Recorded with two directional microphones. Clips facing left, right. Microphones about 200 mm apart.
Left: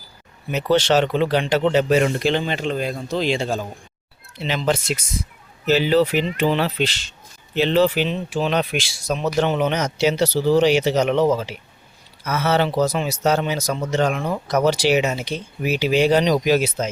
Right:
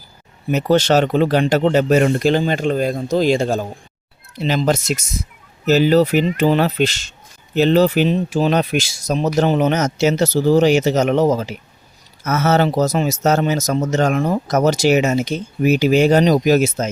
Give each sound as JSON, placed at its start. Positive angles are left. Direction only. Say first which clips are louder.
{"t": 0.5, "sound": "speech", "louder": "right 3 dB", "side_deg": -45}